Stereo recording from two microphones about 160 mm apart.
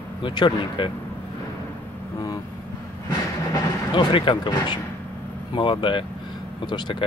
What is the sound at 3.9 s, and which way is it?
Speech, 30° left (ahead or behind).